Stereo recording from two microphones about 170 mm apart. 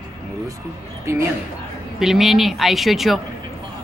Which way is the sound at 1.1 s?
15° right (ahead or behind).